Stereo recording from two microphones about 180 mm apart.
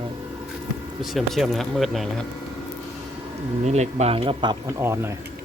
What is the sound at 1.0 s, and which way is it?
Speech, centre (ahead or behind).